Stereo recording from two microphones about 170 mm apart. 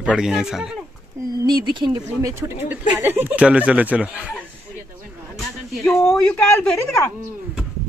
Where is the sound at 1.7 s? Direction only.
25° right (ahead or behind).